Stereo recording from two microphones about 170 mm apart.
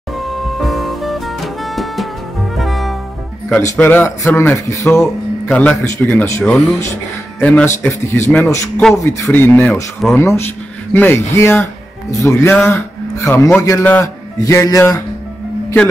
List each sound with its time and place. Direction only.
0.2 s music: centre (ahead or behind)
2.5 s brass instrument: centre (ahead or behind)
3.7 s a man's voice: 10° left (ahead or behind)